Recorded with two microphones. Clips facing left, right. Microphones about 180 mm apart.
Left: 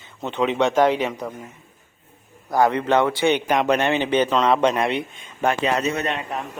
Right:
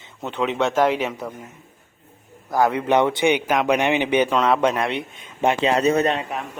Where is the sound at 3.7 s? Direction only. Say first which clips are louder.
Right 1 dB; 15° right (ahead or behind); by 5.0 s centre (ahead or behind).